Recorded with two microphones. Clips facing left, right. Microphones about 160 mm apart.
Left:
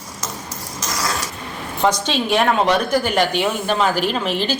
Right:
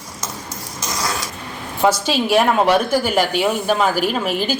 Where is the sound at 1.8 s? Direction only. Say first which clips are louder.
Right 2 dB; 5° right (ahead or behind).